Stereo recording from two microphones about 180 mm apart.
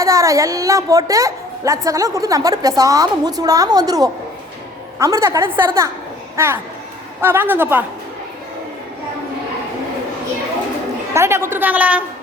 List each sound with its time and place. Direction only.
0.0 s a woman's voice: 15° right (ahead or behind)
11.1 s a woman's voice: 15° right (ahead or behind)